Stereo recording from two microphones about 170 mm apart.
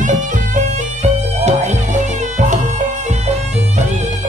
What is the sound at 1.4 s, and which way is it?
Music, 40° right (ahead or behind).